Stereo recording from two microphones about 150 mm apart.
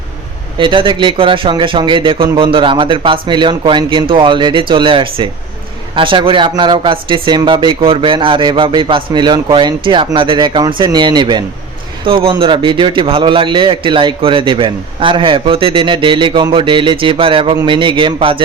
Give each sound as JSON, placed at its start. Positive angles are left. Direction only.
{"t": 0.6, "sound": "speech", "side_deg": -35}